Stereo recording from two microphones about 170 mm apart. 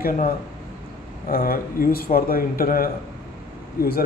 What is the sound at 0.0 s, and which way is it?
Speech, 55° left (ahead or behind).